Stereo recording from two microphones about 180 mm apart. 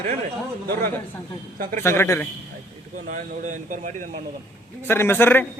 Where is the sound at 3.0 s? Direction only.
45° right (ahead or behind).